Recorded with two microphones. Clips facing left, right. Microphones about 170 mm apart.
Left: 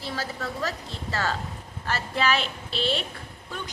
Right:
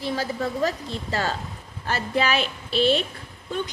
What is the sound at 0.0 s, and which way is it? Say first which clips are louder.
A woman's voice: right 6 dB; 15° right (ahead or behind).